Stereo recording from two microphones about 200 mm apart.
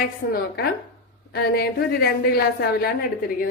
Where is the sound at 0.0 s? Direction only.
50° left (ahead or behind).